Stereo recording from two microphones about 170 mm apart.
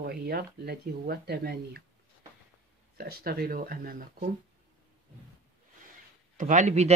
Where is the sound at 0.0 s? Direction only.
65° right (ahead or behind).